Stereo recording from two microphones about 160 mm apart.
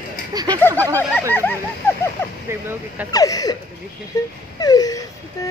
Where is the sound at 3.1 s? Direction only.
20° left (ahead or behind).